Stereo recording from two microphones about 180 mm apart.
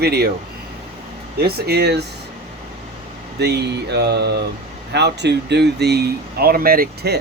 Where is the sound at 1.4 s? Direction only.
65° right (ahead or behind).